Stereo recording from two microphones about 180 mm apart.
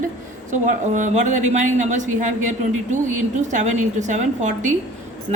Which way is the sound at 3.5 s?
40° right (ahead or behind).